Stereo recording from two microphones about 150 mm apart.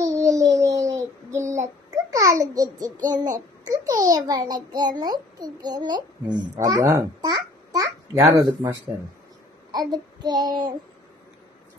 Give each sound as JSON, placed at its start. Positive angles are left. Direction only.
{"t": 0.0, "sound": "child singing", "side_deg": -20}
{"t": 2.0, "sound": "a child's voice", "side_deg": -20}
{"t": 9.7, "sound": "child singing", "side_deg": -25}